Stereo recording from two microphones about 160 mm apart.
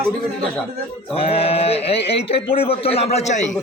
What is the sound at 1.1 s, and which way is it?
Speech, 40° left (ahead or behind).